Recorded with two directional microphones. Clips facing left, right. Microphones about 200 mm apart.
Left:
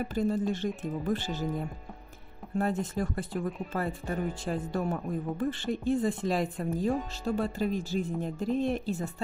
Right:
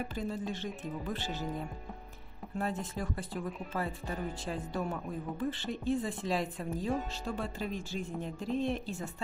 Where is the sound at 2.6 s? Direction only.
45° left (ahead or behind).